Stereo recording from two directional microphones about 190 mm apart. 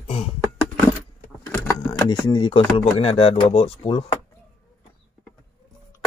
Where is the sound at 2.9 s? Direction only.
30° left (ahead or behind).